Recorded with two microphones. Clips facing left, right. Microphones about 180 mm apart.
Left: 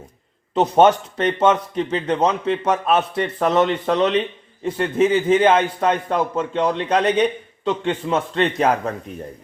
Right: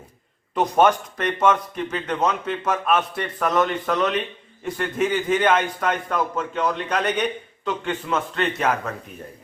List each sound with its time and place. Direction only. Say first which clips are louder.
0.5 s a man's voice: left 4 dB; 25° left (ahead or behind)